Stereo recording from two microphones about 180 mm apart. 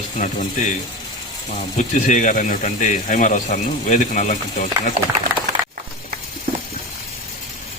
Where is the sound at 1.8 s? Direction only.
45° left (ahead or behind).